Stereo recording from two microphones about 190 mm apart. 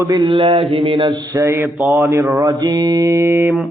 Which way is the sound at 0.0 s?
20° right (ahead or behind).